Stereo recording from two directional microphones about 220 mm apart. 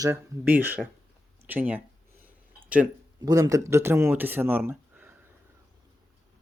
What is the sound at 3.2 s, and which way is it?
Speech, 15° right (ahead or behind).